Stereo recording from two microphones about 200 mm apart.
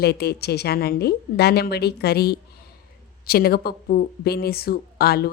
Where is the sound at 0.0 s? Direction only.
55° left (ahead or behind).